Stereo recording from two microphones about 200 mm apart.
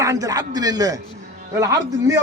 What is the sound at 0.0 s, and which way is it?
A man's voice, 15° right (ahead or behind).